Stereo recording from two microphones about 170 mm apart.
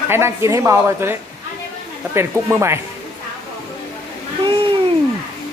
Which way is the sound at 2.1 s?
15° right (ahead or behind).